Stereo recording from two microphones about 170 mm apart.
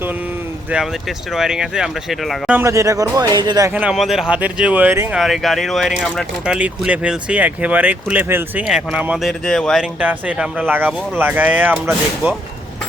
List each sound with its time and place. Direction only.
0.7 s speech: centre (ahead or behind)
2.6 s speech: 20° right (ahead or behind)
3.7 s speech: 5° right (ahead or behind)
5.2 s speech: centre (ahead or behind)